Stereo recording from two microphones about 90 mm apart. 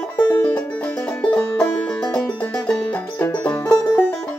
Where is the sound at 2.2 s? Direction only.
10° left (ahead or behind).